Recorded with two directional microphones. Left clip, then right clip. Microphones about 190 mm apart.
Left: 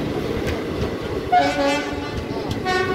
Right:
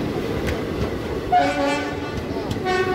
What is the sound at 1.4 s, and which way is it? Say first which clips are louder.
Train: left 1 dB; 15° left (ahead or behind).